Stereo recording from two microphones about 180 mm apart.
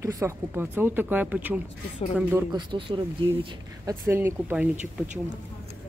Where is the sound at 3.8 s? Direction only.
15° right (ahead or behind).